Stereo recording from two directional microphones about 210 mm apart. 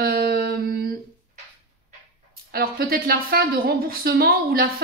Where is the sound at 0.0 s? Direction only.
45° right (ahead or behind).